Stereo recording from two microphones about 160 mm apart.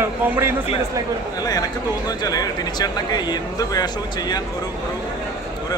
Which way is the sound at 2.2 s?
25° left (ahead or behind).